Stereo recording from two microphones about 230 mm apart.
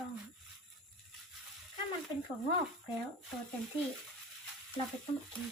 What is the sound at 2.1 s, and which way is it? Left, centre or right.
Speech, centre.